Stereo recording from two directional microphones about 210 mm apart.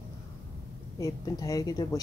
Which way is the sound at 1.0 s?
15° left (ahead or behind).